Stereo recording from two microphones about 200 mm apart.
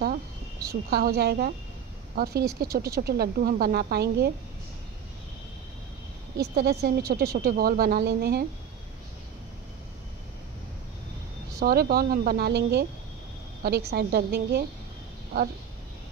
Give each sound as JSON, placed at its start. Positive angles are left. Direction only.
{"t": 0.8, "sound": "speech", "side_deg": -50}
{"t": 6.3, "sound": "speech", "side_deg": -55}
{"t": 11.6, "sound": "speech", "side_deg": -50}